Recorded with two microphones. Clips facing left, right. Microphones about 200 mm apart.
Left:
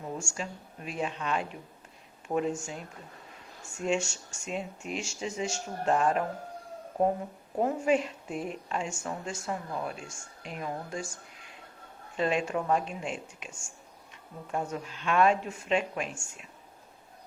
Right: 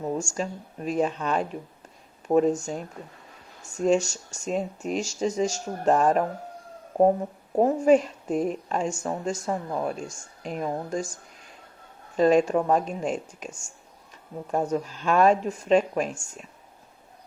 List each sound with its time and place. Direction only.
0.0 s a sound: 45° right (ahead or behind)
0.3 s a woman's voice: 40° right (ahead or behind)
7.5 s a woman's voice: 40° right (ahead or behind)